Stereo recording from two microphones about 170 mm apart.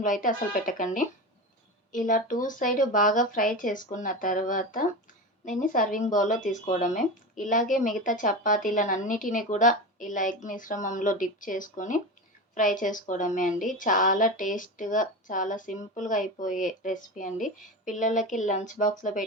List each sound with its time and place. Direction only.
0.0 s speech: 50° left (ahead or behind)
1.9 s speech: 50° left (ahead or behind)